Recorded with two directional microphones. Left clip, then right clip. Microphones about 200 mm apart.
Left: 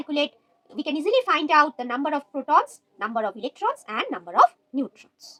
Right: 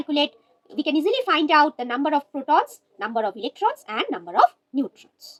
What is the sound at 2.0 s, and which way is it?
A woman's voice, 40° left (ahead or behind).